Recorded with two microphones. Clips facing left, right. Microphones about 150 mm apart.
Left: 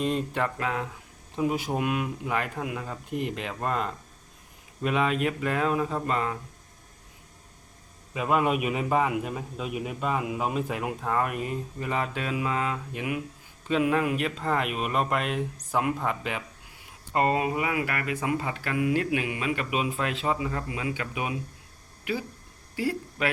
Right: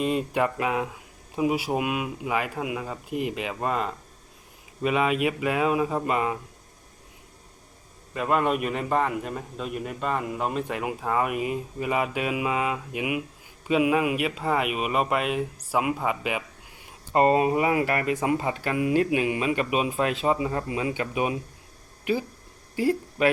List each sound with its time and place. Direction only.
0.0 s a man's voice: 5° right (ahead or behind)
8.1 s a man's voice: 5° left (ahead or behind)
17.1 s speech: 30° right (ahead or behind)
22.9 s speech: 25° right (ahead or behind)